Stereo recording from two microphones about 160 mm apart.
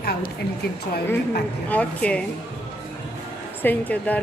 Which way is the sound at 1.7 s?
10° left (ahead or behind).